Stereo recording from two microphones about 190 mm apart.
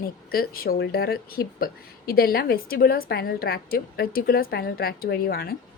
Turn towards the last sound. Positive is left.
turn(degrees=50)  # may be behind; listen again after turning